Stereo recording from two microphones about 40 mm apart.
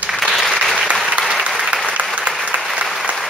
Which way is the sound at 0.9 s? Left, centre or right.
Right.